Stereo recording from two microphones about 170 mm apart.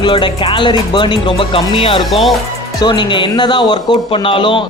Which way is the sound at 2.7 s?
25° left (ahead or behind).